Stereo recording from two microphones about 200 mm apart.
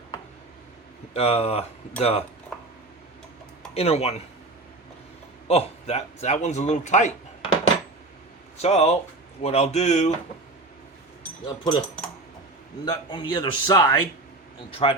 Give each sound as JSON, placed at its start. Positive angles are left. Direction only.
{"t": 1.1, "sound": "speech", "side_deg": 30}
{"t": 3.8, "sound": "speech", "side_deg": 30}
{"t": 5.5, "sound": "speech", "side_deg": 30}
{"t": 8.6, "sound": "speech", "side_deg": 35}
{"t": 11.4, "sound": "a man's voice", "side_deg": 20}
{"t": 12.8, "sound": "a man's voice", "side_deg": 20}
{"t": 14.7, "sound": "a man's voice", "side_deg": 30}